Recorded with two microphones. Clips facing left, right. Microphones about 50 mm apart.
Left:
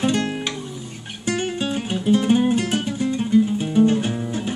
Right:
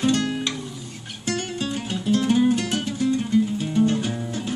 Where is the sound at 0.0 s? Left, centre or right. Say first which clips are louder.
Even; left.